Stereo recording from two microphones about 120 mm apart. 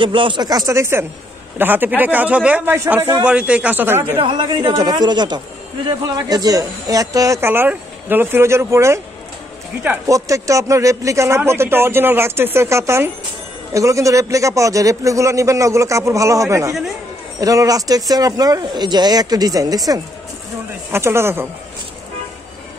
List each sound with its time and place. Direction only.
0.0 s speech: 45° right (ahead or behind); by 3.2 s 20° right (ahead or behind)
3.3 s speech: 10° right (ahead or behind)
4.2 s speech: 45° right (ahead or behind); by 9.0 s 25° right (ahead or behind)
10.0 s speech: 30° right (ahead or behind)
20.9 s speech: 20° right (ahead or behind)